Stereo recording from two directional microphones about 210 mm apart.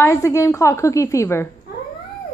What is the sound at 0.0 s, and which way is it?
A woman's voice, 15° left (ahead or behind).